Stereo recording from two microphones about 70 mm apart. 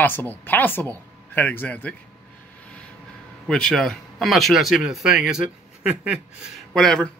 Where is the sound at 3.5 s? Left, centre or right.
Centre.